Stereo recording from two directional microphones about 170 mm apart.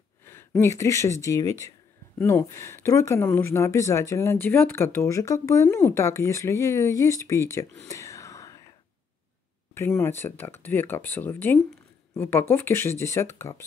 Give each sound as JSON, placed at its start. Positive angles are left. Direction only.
{"t": 0.2, "sound": "speech", "side_deg": 15}
{"t": 7.9, "sound": "whispering", "side_deg": 20}
{"t": 9.9, "sound": "speech", "side_deg": 15}